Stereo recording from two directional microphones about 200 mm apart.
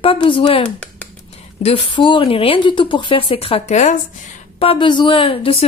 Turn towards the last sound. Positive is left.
turn(degrees=25)  # may be behind; listen again after turning